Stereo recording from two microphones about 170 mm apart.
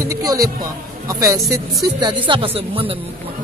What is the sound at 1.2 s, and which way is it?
Speech, 20° right (ahead or behind).